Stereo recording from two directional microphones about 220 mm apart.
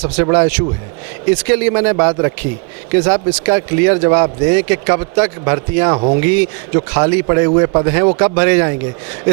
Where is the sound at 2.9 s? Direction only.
15° right (ahead or behind).